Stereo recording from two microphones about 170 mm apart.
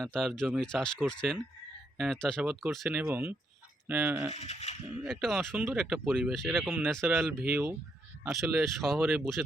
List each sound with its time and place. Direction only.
0.0 s speech: centre (ahead or behind)
3.1 s speech: 15° right (ahead or behind)
4.3 s speech: 40° left (ahead or behind)
5.0 s speech: centre (ahead or behind)
6.8 s speech: centre (ahead or behind)